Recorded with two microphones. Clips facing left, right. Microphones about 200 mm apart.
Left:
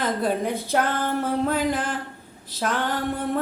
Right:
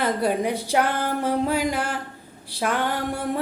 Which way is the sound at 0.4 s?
15° right (ahead or behind).